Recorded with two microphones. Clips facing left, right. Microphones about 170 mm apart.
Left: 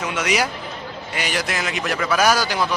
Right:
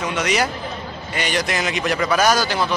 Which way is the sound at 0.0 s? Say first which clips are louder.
Right 1 dB; 10° left (ahead or behind).